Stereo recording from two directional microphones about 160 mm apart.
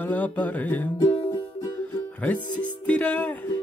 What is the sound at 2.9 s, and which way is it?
Music, 10° left (ahead or behind).